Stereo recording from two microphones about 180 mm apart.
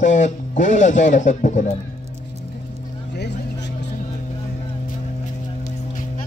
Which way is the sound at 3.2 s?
75° left (ahead or behind).